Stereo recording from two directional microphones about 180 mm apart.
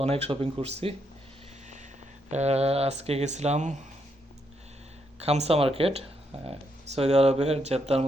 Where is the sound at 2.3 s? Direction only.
35° right (ahead or behind).